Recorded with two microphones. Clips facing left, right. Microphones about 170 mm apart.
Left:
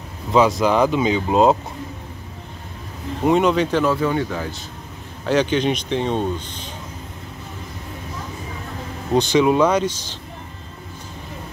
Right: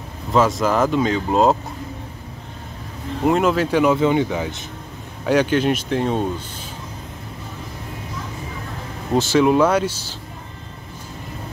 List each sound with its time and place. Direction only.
0.3 s speech: centre (ahead or behind)
3.3 s speech: centre (ahead or behind); by 4.6 s 20° right (ahead or behind)
5.2 s speech: 5° right (ahead or behind)
9.1 s speech: 5° right (ahead or behind)